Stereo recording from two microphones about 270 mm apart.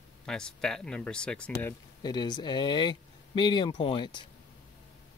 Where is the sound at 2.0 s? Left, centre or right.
Centre.